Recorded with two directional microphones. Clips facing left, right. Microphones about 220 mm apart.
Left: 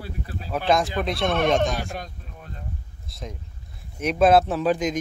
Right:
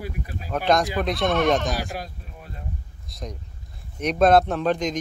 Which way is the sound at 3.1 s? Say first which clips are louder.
Right 1 dB; centre (ahead or behind).